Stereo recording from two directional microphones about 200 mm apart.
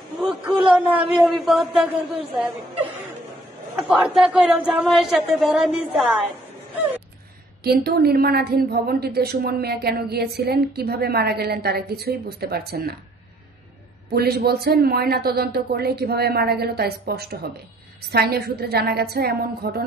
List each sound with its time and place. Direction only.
0.7 s speech: 5° right (ahead or behind)
3.8 s speech: 5° right (ahead or behind)
7.6 s a woman's voice: 50° right (ahead or behind)
14.0 s a woman's voice: 50° right (ahead or behind)